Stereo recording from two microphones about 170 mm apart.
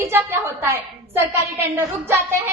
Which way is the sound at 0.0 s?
15° right (ahead or behind).